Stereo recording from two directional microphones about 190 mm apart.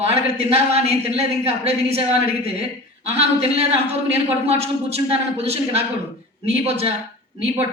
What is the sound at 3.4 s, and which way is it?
A woman's voice, 30° right (ahead or behind).